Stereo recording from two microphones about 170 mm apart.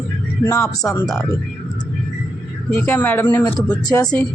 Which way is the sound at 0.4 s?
20° left (ahead or behind).